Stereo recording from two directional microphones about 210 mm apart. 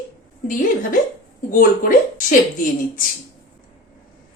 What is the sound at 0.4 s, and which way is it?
Speech, 40° left (ahead or behind).